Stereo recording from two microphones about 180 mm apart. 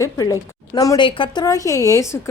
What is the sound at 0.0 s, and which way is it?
A woman's voice, 20° left (ahead or behind).